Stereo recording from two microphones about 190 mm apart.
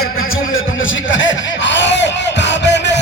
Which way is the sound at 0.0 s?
90° left.